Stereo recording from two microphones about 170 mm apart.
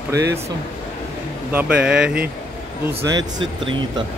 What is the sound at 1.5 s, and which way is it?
Speech, 10° right (ahead or behind).